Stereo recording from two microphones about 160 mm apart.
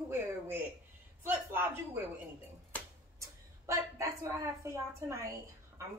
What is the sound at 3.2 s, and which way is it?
A woman's voice, 20° right (ahead or behind).